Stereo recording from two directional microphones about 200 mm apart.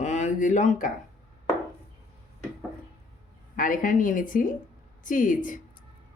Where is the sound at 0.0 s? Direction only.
35° left (ahead or behind).